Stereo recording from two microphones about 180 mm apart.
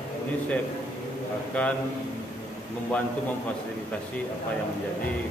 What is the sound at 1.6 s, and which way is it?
Speech, 5° left (ahead or behind).